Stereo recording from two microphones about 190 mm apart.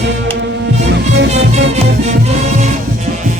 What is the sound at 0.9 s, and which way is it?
Music, 75° right (ahead or behind).